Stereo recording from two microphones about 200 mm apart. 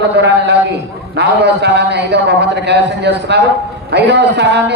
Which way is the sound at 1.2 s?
60° right (ahead or behind).